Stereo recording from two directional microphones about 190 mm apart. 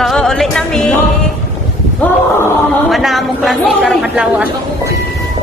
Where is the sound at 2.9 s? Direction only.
Centre (ahead or behind).